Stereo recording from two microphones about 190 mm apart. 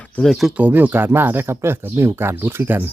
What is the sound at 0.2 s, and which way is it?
Speech, centre (ahead or behind).